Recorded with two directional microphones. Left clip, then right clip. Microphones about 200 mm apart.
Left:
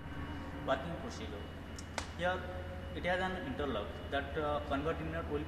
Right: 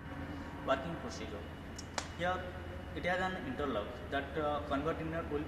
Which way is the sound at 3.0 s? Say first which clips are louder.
Even; centre (ahead or behind).